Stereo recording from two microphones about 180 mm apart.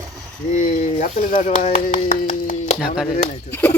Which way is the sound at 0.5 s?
45° left (ahead or behind).